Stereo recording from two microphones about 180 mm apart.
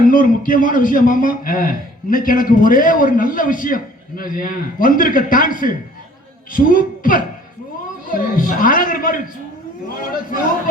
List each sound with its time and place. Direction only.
0.0 s a man's voice: 50° left (ahead or behind)